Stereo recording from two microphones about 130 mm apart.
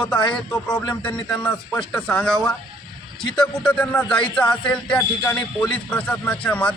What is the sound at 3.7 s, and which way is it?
Speech, 10° left (ahead or behind).